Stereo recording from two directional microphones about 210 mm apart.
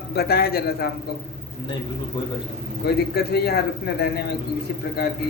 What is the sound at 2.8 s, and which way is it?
A man's voice, 50° left (ahead or behind).